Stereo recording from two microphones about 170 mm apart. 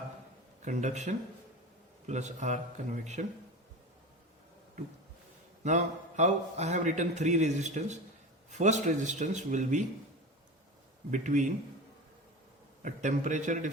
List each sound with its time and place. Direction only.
0.6 s a man's voice: 45° right (ahead or behind)
5.6 s a man's voice: 45° right (ahead or behind)
11.1 s a man's voice: 45° right (ahead or behind)
12.8 s a man's voice: 45° right (ahead or behind)